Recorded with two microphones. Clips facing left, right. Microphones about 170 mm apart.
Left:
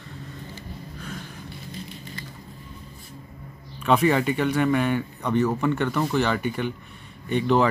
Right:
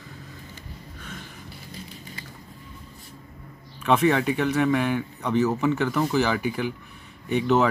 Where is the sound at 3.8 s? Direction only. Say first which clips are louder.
Even; centre (ahead or behind).